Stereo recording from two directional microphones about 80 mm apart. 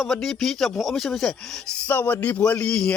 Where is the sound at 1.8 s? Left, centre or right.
Left.